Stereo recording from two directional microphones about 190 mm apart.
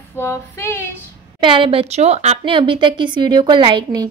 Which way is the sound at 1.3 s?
25° right (ahead or behind).